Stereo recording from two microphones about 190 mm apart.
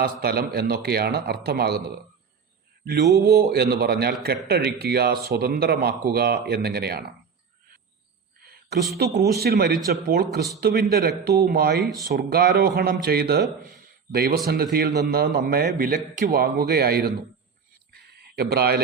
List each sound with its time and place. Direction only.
0.0 s a man's voice: 55° right (ahead or behind)
3.2 s a man's voice: 55° right (ahead or behind)
9.2 s a man's voice: 55° right (ahead or behind)
13.6 s a sound: 50° right (ahead or behind)
14.4 s a man's voice: 55° right (ahead or behind)
17.9 s a sound: 55° right (ahead or behind)